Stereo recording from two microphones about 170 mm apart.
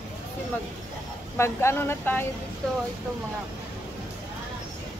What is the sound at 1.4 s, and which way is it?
Speech, 15° left (ahead or behind).